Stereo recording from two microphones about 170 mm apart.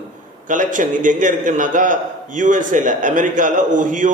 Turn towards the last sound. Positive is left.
turn(degrees=-50)  # may be behind; listen again after turning